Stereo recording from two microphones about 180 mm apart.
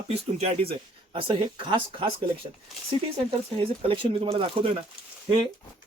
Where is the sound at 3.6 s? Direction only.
30° right (ahead or behind).